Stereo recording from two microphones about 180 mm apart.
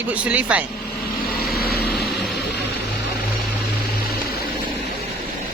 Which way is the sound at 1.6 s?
60° left (ahead or behind).